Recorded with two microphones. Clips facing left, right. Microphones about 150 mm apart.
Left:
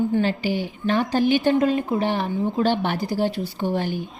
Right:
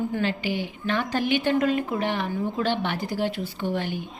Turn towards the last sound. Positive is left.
turn(degrees=40)  # may be behind; listen again after turning